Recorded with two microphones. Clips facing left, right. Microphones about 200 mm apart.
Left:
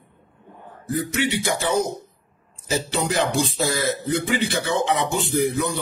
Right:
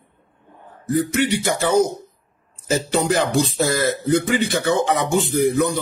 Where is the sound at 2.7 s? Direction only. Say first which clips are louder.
Right 5 dB; 45° right (ahead or behind).